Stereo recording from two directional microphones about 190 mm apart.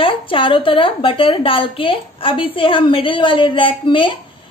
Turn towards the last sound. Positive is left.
turn(degrees=25)  # may be behind; listen again after turning